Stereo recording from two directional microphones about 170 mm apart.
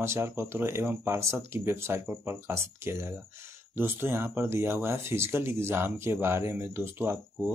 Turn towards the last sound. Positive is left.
turn(degrees=-10)  # may be behind; listen again after turning